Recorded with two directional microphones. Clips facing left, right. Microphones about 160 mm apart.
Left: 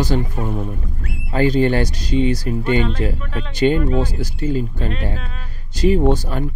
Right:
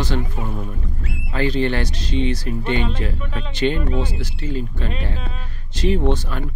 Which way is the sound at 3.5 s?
40° left (ahead or behind).